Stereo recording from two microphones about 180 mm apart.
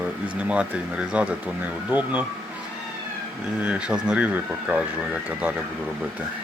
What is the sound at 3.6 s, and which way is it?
Speech, 5° right (ahead or behind).